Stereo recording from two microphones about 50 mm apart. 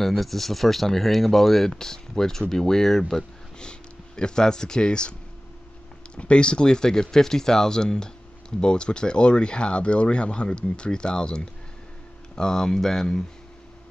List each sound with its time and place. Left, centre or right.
0.0 s speech: centre
6.1 s speech: left